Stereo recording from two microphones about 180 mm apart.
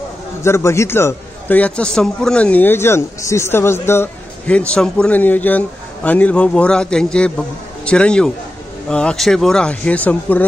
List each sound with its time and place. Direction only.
0.4 s a man's voice: 15° left (ahead or behind)